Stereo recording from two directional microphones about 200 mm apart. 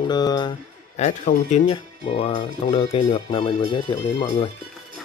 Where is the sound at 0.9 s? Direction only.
35° left (ahead or behind).